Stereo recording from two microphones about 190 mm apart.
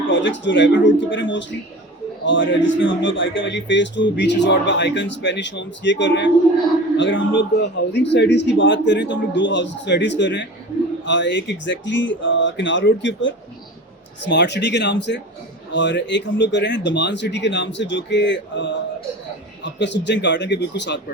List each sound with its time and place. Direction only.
0.1 s speech: 75° left (ahead or behind)